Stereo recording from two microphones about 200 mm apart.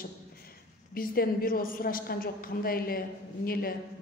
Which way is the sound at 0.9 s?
50° left (ahead or behind).